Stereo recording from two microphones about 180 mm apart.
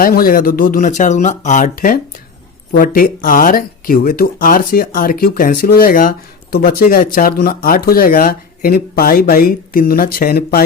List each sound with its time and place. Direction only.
0.0 s speech: 55° left (ahead or behind)